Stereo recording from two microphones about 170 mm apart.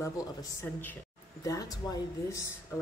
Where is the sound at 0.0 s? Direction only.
15° left (ahead or behind).